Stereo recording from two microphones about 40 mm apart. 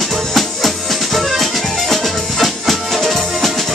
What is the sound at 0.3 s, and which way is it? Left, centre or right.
Music, centre.